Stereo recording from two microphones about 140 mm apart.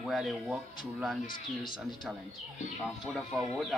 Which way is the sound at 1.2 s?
90° left.